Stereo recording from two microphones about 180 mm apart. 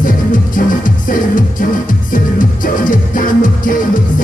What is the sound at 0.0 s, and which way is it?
Music, 50° left (ahead or behind).